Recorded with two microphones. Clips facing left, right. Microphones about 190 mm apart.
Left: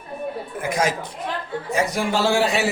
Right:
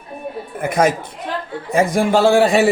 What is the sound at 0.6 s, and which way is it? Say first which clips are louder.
A man's voice: right 6 dB; 55° right (ahead or behind).